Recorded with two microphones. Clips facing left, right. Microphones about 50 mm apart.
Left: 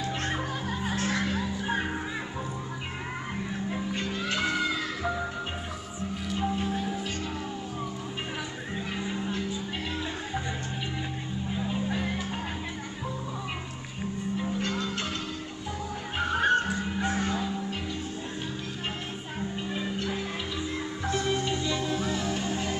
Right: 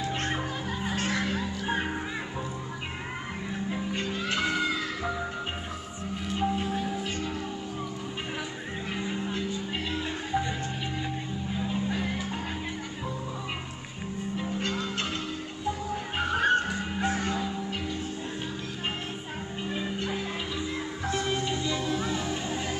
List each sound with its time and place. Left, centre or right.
0.0 s music: centre
1.1 s music: centre
4.1 s music: centre
6.4 s music: centre
9.0 s music: centre
11.5 s music: centre
16.2 s music: centre
16.7 s music: centre
17.4 s music: centre
21.1 s music: centre